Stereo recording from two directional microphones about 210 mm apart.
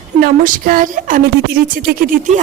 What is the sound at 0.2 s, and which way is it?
A woman's voice, 40° right (ahead or behind).